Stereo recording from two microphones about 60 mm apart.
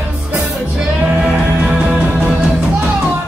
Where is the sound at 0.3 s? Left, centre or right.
Centre.